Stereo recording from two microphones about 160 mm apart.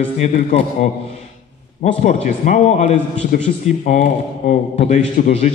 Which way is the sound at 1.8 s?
45° left (ahead or behind).